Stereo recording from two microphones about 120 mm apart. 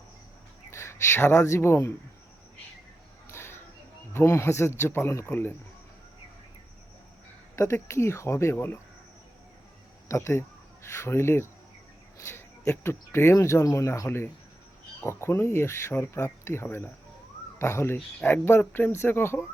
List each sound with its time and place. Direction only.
0.7 s speech: 25° left (ahead or behind)
3.2 s a sound: 20° left (ahead or behind)
4.1 s speech: 20° left (ahead or behind)
7.5 s speech: 25° left (ahead or behind)
10.1 s speech: 25° left (ahead or behind)
12.6 s speech: 15° left (ahead or behind)